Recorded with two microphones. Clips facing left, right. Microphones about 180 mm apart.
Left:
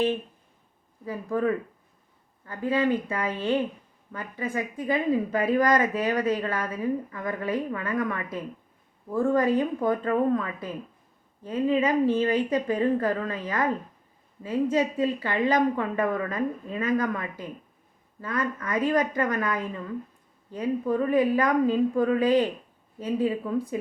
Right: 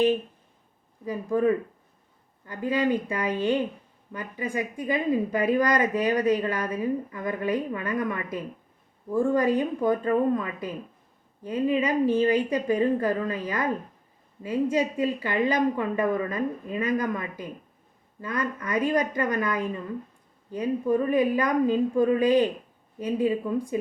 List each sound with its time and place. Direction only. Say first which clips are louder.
1.0 s a woman's voice: right 3 dB; 15° right (ahead or behind)